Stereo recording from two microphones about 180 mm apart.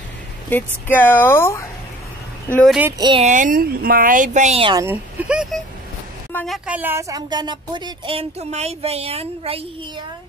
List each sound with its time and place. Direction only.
0.5 s speech: 10° left (ahead or behind)
2.5 s speech: centre (ahead or behind)
3.0 s a woman's voice: 25° right (ahead or behind)
3.3 s speech: 45° right (ahead or behind)
4.6 s a woman's voice: 20° right (ahead or behind)
5.3 s a woman's voice: 5° right (ahead or behind); by 9.7 s 30° right (ahead or behind)